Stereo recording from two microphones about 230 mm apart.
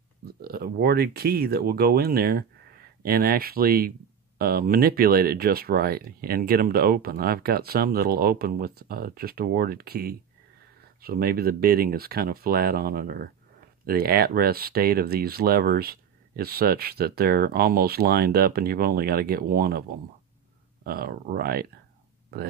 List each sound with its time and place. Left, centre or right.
0.2 s speech: right
20.8 s speech: right